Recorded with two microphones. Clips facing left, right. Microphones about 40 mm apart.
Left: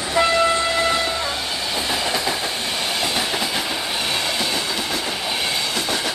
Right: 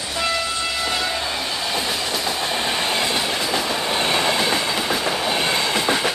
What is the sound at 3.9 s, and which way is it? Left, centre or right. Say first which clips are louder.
Train: right 3 dB; right.